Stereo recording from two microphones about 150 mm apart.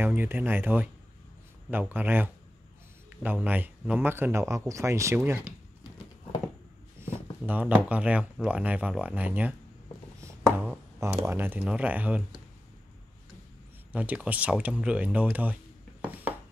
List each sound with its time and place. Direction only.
0.0 s speech: 15° right (ahead or behind)
7.0 s a sound: 15° right (ahead or behind)
7.9 s speech: 10° right (ahead or behind)
10.2 s a sound: 15° right (ahead or behind)
11.2 s speech: 15° right (ahead or behind)
13.9 s speech: 10° right (ahead or behind)